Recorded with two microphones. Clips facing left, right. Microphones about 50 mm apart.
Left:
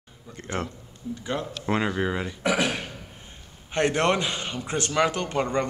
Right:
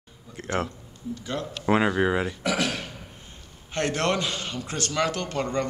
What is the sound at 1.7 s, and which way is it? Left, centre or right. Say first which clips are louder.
Speech: right 4 dB; centre.